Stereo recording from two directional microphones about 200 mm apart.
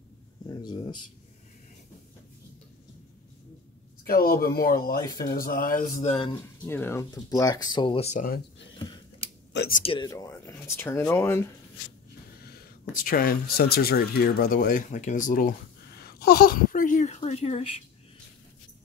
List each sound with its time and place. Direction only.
0.5 s speech: 20° left (ahead or behind)
4.0 s speech: 45° left (ahead or behind)
6.0 s speech: 25° left (ahead or behind)
6.6 s speech: 10° left (ahead or behind); by 8.3 s 35° left (ahead or behind)
9.7 s speech: 40° left (ahead or behind)
9.9 s speech: 15° left (ahead or behind)
12.4 s speech: 45° left (ahead or behind)
16.0 s a sound: 50° left (ahead or behind); by 17.6 s 30° left (ahead or behind)